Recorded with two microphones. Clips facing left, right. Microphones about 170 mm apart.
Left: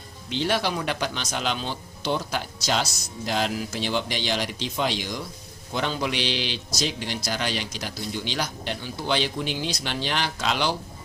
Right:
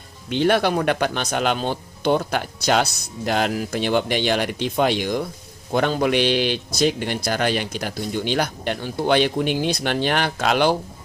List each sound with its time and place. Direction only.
0.3 s a man's voice: 55° right (ahead or behind)